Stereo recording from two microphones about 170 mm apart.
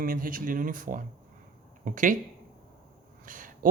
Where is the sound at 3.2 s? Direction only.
55° right (ahead or behind).